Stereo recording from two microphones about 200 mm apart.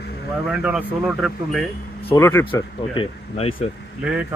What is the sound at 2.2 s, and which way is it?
Speech, 15° left (ahead or behind).